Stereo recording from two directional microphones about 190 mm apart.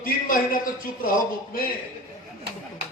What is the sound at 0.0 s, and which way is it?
A man's voice, 50° left (ahead or behind).